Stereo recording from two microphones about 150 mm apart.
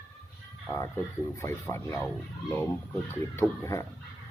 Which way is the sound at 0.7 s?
20° left (ahead or behind).